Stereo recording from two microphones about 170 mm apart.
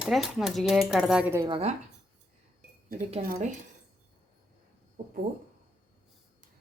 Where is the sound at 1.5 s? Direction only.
35° right (ahead or behind).